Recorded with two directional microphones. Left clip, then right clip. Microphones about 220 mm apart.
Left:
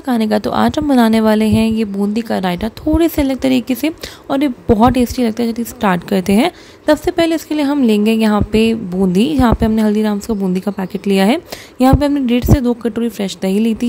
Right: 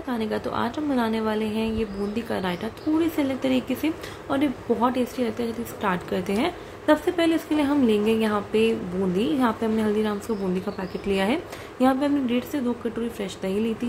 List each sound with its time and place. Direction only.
0.0 s a woman's voice: 50° left (ahead or behind)